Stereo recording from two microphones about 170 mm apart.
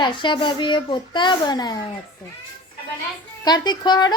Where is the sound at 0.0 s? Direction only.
30° left (ahead or behind).